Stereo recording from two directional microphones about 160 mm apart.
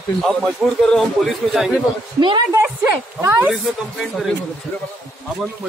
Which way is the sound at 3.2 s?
15° right (ahead or behind).